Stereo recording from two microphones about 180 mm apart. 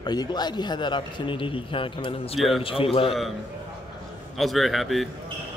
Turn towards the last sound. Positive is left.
turn(degrees=0)  # may be behind; listen again after turning